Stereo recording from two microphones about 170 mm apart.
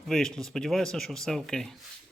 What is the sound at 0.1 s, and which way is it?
Speech, 5° left (ahead or behind).